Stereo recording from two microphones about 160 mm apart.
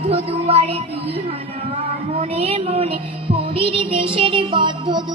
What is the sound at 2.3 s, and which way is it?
Music, 40° right (ahead or behind).